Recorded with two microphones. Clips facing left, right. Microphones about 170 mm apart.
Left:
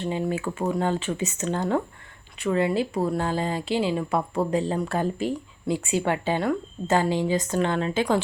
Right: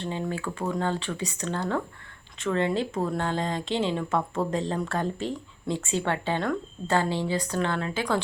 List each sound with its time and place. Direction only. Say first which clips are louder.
0.0 s speech: left 4 dB; 15° left (ahead or behind)